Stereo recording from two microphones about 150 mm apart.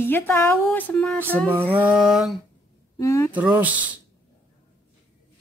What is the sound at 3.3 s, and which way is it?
Speech, 10° right (ahead or behind).